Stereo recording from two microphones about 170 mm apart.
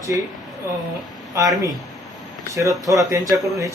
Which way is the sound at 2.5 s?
20° right (ahead or behind).